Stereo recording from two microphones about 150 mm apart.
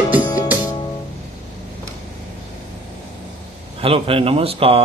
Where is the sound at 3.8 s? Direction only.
40° right (ahead or behind).